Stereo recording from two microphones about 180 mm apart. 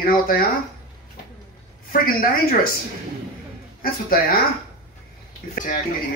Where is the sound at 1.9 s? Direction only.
55° left (ahead or behind).